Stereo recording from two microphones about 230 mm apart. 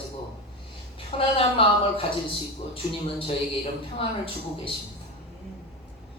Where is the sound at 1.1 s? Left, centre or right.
Left.